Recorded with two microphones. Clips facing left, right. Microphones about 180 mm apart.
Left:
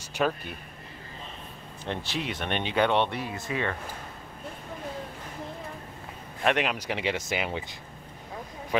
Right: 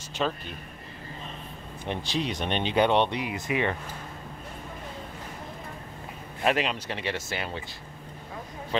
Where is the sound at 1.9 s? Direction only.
15° right (ahead or behind).